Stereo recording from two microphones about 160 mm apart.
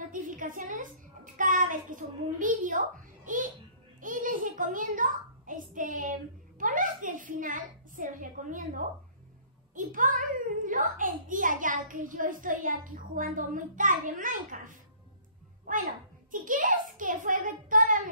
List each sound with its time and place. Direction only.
0.1 s a child's voice: 55° right (ahead or behind)
3.3 s babbling: 55° right (ahead or behind)
4.0 s a child's voice: 55° right (ahead or behind)